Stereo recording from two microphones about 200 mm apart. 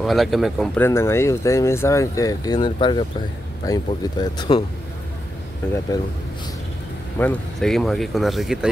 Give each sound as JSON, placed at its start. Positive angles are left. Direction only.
{"t": 0.0, "sound": "speech", "side_deg": 0}
{"t": 0.7, "sound": "speech", "side_deg": 10}
{"t": 5.9, "sound": "speech", "side_deg": 20}
{"t": 7.2, "sound": "speech", "side_deg": 5}